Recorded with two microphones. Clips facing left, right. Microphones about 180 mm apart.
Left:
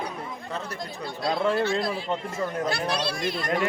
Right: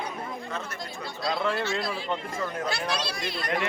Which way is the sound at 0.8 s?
50° left (ahead or behind).